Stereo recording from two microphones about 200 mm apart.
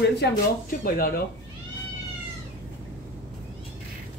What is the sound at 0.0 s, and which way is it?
Speech, 50° left (ahead or behind).